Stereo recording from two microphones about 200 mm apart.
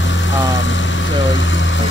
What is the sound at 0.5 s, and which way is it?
Vehicle, 70° left (ahead or behind).